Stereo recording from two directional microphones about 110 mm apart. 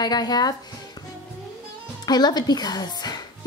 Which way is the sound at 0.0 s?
40° left (ahead or behind).